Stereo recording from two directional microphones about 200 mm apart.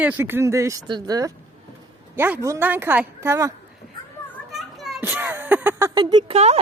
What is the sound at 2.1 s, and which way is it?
A woman's voice, 10° right (ahead or behind).